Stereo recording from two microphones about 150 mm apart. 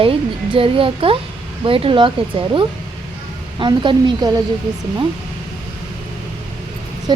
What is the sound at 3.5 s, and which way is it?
Speech, 30° right (ahead or behind).